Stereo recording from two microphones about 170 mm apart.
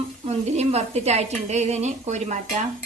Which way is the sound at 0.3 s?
40° right (ahead or behind).